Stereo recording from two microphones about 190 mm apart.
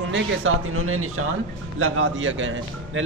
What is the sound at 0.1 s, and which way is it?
A man's voice, 85° right.